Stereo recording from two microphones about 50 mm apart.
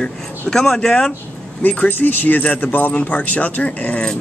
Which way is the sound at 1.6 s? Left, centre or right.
Left.